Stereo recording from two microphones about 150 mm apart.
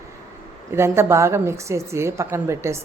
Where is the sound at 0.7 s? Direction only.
15° right (ahead or behind).